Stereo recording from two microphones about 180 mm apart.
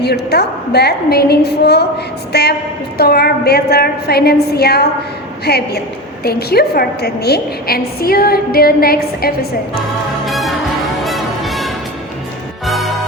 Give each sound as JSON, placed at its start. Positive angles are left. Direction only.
{"t": 0.0, "sound": "a woman's voice", "side_deg": 65}
{"t": 10.2, "sound": "music", "side_deg": 0}